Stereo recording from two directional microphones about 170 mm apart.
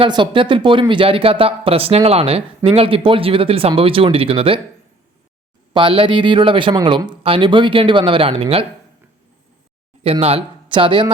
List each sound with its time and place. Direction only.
0.0 s speech: 30° right (ahead or behind)
5.7 s speech: 30° right (ahead or behind)
10.0 s speech: 35° right (ahead or behind)